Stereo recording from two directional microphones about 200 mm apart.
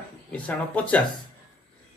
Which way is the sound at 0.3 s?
5° left (ahead or behind).